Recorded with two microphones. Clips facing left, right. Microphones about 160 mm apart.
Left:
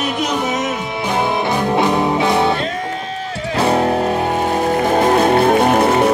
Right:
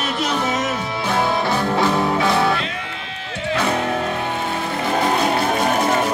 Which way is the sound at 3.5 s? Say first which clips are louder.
Left 6 dB; 35° left (ahead or behind).